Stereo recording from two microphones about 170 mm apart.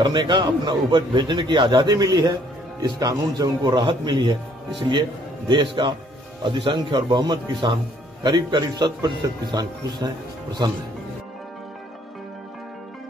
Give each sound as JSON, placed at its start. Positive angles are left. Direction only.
{"t": 0.0, "sound": "speech", "side_deg": -25}
{"t": 5.5, "sound": "speech", "side_deg": -30}